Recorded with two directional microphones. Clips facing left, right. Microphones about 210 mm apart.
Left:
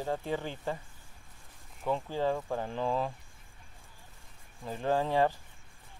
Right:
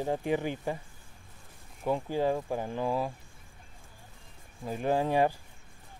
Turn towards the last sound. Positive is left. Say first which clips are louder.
# right 1 dB
turn(degrees=-15)  # may be behind; listen again after turning